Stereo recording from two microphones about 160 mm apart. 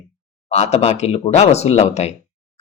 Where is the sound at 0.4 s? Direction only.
45° left (ahead or behind).